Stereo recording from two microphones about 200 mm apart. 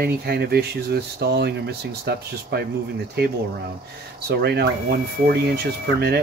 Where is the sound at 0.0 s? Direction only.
55° right (ahead or behind).